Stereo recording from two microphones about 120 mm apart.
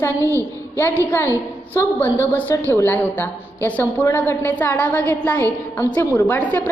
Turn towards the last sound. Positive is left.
turn(degrees=15)  # may be behind; listen again after turning